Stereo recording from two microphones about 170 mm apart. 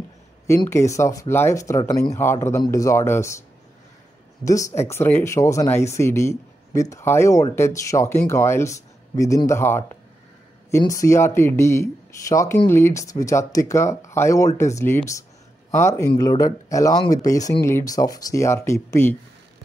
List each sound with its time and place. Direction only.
0.7 s speech: 15° left (ahead or behind)
4.5 s speech: 20° left (ahead or behind)